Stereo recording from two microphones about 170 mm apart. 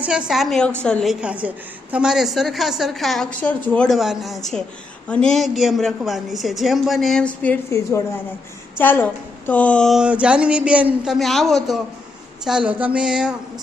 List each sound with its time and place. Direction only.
0.0 s a woman's voice: 5° right (ahead or behind)
1.2 s a woman's voice: 10° right (ahead or behind)
7.4 s a woman's voice: 15° left (ahead or behind); by 13.3 s 5° right (ahead or behind)